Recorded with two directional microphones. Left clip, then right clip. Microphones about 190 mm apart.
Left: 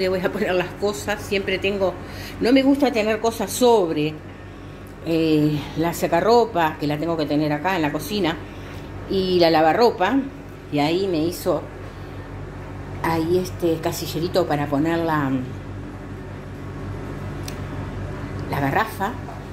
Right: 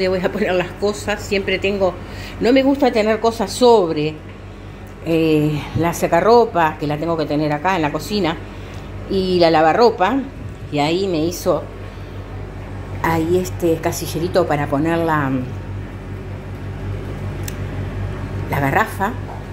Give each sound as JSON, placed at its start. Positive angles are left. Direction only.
{"t": 0.0, "sound": "a woman's voice", "side_deg": -5}
{"t": 13.0, "sound": "a woman's voice", "side_deg": -10}
{"t": 18.5, "sound": "a woman's voice", "side_deg": -15}